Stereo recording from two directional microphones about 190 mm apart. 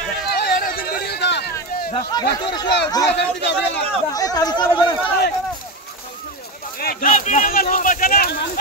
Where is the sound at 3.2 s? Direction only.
65° left (ahead or behind).